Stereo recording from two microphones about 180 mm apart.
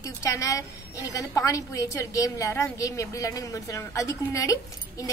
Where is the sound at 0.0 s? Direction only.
15° left (ahead or behind).